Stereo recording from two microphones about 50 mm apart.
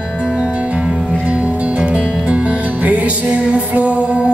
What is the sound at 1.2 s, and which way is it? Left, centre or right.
Music, right.